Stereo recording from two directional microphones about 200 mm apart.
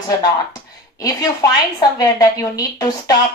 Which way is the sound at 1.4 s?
15° left (ahead or behind).